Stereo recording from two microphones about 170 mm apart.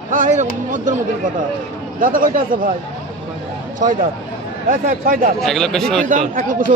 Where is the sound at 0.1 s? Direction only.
45° right (ahead or behind).